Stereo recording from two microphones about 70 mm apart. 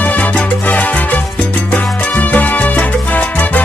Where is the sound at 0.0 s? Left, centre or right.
Left.